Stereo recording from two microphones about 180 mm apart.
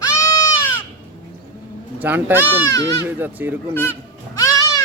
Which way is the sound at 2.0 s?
10° right (ahead or behind).